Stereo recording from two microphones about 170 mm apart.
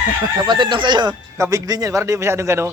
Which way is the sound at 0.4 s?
25° right (ahead or behind).